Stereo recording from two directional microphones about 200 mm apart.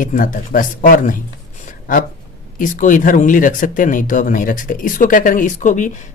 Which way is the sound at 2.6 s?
40° left (ahead or behind).